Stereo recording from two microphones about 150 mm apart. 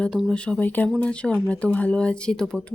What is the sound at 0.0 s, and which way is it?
Speech, 5° left (ahead or behind).